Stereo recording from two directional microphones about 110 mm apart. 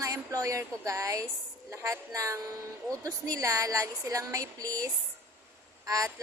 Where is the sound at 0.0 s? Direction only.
30° right (ahead or behind).